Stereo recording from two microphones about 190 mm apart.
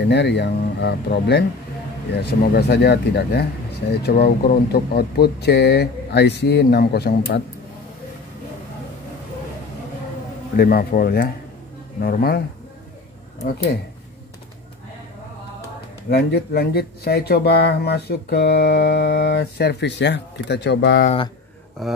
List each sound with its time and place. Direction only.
0.0 s speech: 65° left (ahead or behind)
10.5 s speech: 50° left (ahead or behind)
16.1 s speech: 60° left (ahead or behind)
21.8 s speech: centre (ahead or behind)